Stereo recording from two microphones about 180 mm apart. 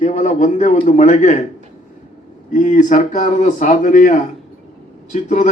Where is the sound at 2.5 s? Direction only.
45° left (ahead or behind).